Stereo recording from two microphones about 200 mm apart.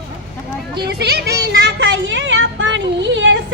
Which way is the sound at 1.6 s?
65° right (ahead or behind).